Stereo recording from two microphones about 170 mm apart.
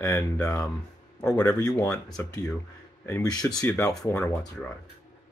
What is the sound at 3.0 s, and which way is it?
Speech, 15° left (ahead or behind).